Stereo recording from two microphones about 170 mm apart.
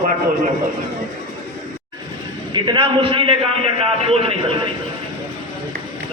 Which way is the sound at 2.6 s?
30° right (ahead or behind).